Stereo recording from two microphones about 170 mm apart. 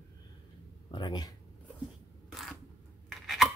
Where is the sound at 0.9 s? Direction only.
25° left (ahead or behind).